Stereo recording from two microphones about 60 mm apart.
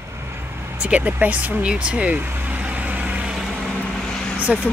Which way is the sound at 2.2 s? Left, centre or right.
Right.